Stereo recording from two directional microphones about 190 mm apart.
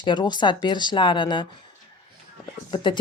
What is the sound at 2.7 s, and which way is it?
Speech, 25° left (ahead or behind).